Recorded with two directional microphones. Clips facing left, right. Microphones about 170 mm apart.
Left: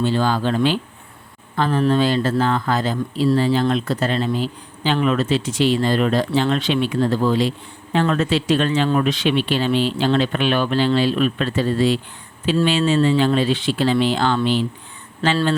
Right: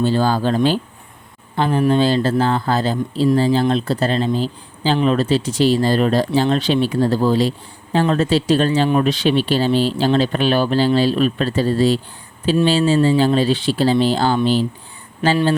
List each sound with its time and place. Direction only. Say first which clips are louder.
0.0 s speech: right 2 dB; 40° right (ahead or behind)
1.5 s speech: right 2 dB; 30° right (ahead or behind)